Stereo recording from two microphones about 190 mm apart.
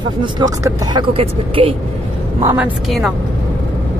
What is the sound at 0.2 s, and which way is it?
Speech, 20° right (ahead or behind).